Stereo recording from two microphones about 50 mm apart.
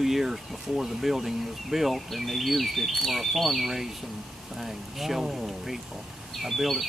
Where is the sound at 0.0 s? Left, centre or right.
Centre.